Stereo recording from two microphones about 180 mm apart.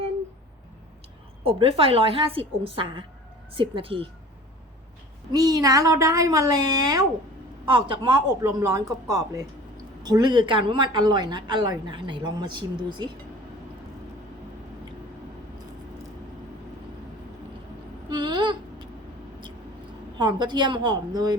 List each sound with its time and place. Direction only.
1.5 s a woman's voice: 30° right (ahead or behind)
5.3 s a woman's voice: 20° right (ahead or behind)
8.4 s a woman's voice: 15° right (ahead or behind)
18.1 s a sound: 25° right (ahead or behind)
20.1 s a woman's voice: 25° right (ahead or behind)